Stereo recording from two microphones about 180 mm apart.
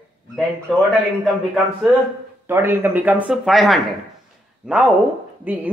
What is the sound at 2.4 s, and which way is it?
Speech, 15° right (ahead or behind).